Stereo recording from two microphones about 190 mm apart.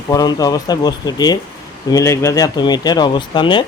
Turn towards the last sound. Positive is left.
turn(degrees=25)  # may be behind; listen again after turning